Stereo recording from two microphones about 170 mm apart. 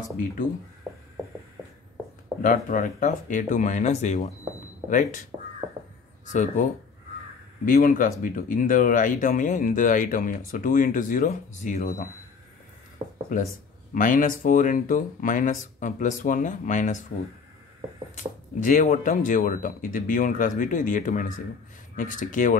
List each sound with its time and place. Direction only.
2.4 s speech: 50° left (ahead or behind)
6.2 s speech: 45° left (ahead or behind)
13.9 s speech: 50° left (ahead or behind)
18.1 s speech: 50° left (ahead or behind)